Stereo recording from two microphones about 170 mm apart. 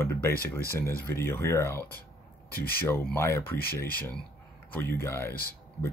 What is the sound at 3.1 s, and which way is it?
Speech, 15° left (ahead or behind).